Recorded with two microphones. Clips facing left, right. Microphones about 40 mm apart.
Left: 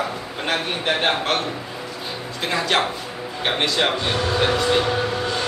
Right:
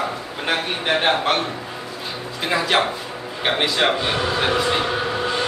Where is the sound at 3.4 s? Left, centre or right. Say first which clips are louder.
Right 1 dB; centre.